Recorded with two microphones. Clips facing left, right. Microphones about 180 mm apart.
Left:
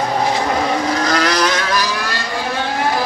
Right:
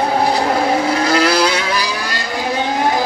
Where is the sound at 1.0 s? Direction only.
10° right (ahead or behind).